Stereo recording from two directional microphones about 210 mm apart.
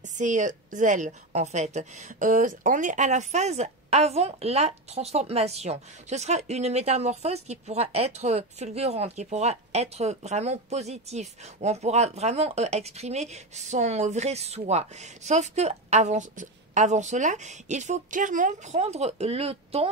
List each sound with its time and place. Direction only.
0.2 s speech: 35° right (ahead or behind)